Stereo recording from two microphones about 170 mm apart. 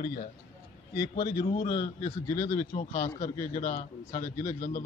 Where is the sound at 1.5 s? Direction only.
30° left (ahead or behind).